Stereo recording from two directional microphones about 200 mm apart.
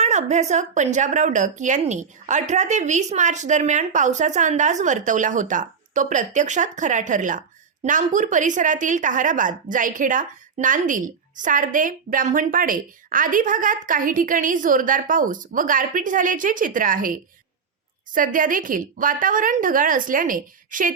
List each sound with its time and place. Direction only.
0.0 s a woman's voice: 35° right (ahead or behind)